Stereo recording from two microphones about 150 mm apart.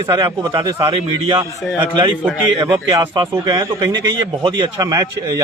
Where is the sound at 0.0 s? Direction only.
25° right (ahead or behind).